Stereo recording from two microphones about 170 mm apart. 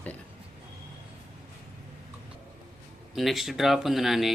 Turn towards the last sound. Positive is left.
turn(degrees=0)  # may be behind; listen again after turning